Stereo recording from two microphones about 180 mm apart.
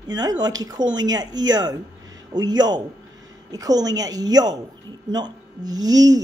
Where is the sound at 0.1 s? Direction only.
20° right (ahead or behind).